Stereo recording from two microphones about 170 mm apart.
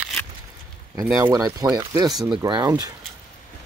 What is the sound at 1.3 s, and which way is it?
Speech, 20° right (ahead or behind).